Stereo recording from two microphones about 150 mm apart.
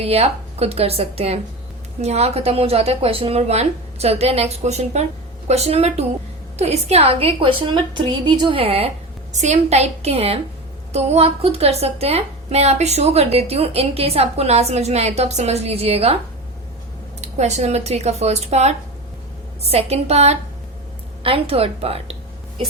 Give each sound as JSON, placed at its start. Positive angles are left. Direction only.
{"t": 0.0, "sound": "a woman's voice", "side_deg": -45}
{"t": 17.2, "sound": "a woman's voice", "side_deg": -50}